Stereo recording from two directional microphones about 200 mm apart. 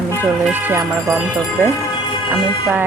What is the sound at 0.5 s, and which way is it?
Speech, 10° right (ahead or behind).